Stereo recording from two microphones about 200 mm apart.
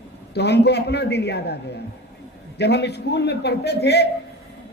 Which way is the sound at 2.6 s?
55° left (ahead or behind).